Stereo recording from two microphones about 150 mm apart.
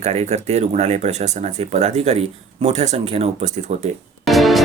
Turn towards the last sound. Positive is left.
turn(degrees=0)  # may be behind; listen again after turning